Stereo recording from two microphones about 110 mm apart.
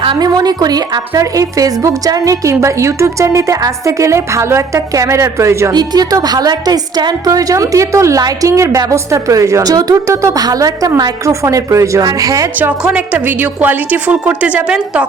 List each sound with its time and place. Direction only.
0.0 s speech: 45° right (ahead or behind); by 5.7 s 25° right (ahead or behind)
5.7 s a woman's voice: 35° right (ahead or behind)
12.8 s a woman's voice: 15° right (ahead or behind)